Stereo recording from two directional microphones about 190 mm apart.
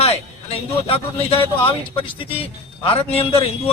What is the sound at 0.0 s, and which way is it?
A man's voice, 30° left (ahead or behind).